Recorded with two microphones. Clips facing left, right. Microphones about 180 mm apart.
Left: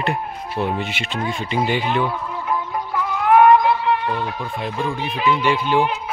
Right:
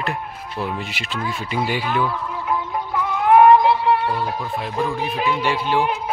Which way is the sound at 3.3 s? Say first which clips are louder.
Right 1 dB; 30° right (ahead or behind).